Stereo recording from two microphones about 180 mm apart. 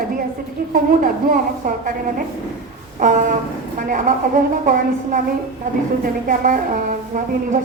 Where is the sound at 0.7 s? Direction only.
50° right (ahead or behind).